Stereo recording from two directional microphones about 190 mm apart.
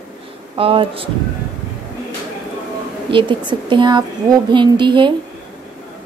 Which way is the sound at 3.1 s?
25° right (ahead or behind).